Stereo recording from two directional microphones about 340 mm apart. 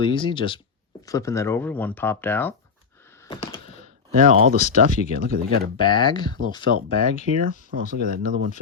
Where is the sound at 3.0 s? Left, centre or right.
Centre.